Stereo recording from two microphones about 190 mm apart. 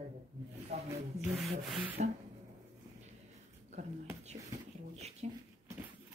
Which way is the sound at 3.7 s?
35° right (ahead or behind).